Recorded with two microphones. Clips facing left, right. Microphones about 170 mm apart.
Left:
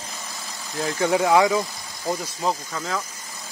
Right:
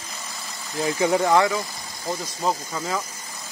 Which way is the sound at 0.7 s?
5° right (ahead or behind).